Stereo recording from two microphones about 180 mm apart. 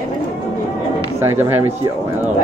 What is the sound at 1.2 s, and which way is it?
Speech, 15° right (ahead or behind).